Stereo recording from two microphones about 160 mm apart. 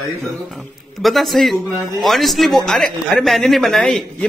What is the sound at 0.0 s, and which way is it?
Speech, centre (ahead or behind).